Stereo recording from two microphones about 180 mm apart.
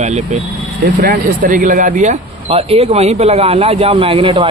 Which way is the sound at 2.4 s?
30° right (ahead or behind).